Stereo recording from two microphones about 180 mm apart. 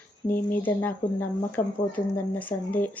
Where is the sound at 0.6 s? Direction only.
10° left (ahead or behind).